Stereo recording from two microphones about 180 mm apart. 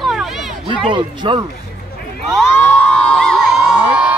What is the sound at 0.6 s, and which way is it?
Speech, 25° right (ahead or behind).